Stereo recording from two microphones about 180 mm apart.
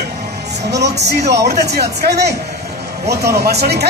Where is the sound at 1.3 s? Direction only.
65° right (ahead or behind).